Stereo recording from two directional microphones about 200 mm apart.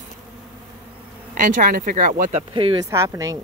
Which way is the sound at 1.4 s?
40° right (ahead or behind).